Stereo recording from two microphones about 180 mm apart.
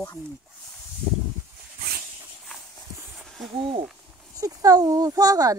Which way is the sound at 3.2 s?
Centre (ahead or behind).